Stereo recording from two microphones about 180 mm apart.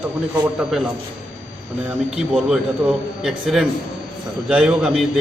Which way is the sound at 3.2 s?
5° right (ahead or behind).